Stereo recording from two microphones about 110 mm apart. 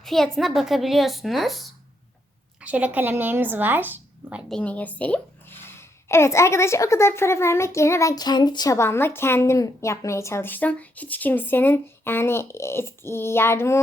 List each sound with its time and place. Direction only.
0.0 s a woman's voice: centre (ahead or behind)
2.6 s a woman's voice: 10° right (ahead or behind)
4.4 s a woman's voice: 10° left (ahead or behind)